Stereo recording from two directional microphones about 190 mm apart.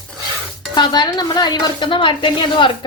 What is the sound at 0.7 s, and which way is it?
A woman's voice, 25° left (ahead or behind).